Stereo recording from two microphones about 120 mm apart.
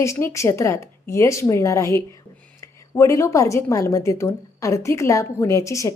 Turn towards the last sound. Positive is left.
turn(degrees=25)  # may be behind; listen again after turning